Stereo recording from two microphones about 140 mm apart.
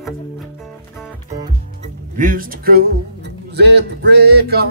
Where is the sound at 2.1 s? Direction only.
75° right (ahead or behind); by 2.9 s 90° right.